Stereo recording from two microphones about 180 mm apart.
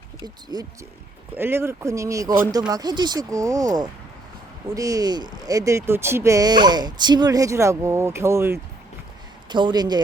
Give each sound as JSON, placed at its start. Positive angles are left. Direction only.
{"t": 0.5, "sound": "speech", "side_deg": -20}
{"t": 9.5, "sound": "speech", "side_deg": -25}